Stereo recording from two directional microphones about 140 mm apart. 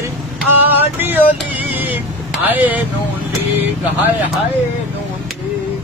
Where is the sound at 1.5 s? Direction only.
10° right (ahead or behind).